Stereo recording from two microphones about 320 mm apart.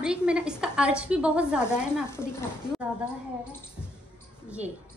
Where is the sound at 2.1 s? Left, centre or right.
Centre.